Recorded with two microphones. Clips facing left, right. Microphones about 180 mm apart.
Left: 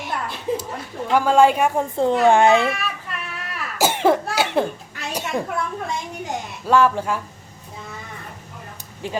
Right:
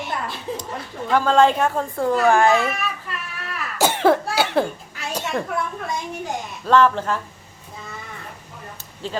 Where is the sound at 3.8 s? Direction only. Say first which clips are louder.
Even; 5° left (ahead or behind).